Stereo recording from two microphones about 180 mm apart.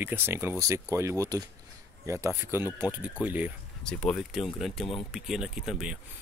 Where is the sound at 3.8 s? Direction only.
5° left (ahead or behind).